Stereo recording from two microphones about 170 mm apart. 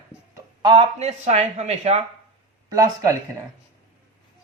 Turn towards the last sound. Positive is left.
turn(degrees=-20)  # may be behind; listen again after turning